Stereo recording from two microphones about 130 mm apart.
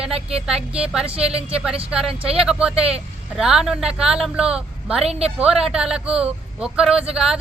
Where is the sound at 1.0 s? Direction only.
50° right (ahead or behind).